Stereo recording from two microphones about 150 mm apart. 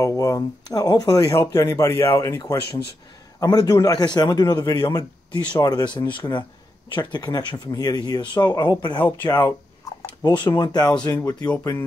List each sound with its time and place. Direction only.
0.0 s a man's voice: 20° left (ahead or behind)
8.9 s speech: 10° left (ahead or behind)
10.2 s a man's voice: 30° left (ahead or behind)